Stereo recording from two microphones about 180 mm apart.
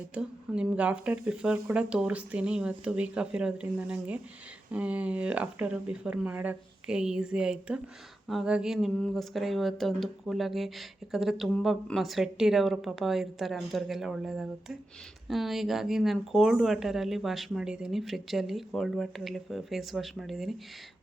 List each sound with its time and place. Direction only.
0.1 s speech: 5° right (ahead or behind)